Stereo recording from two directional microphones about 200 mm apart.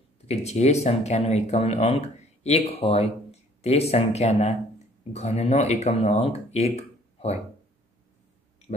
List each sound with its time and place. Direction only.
0.3 s speech: 35° left (ahead or behind)